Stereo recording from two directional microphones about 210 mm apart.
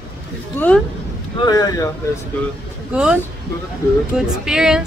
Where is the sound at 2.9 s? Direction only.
5° right (ahead or behind).